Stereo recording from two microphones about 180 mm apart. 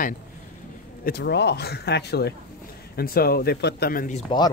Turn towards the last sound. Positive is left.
turn(degrees=25)  # may be behind; listen again after turning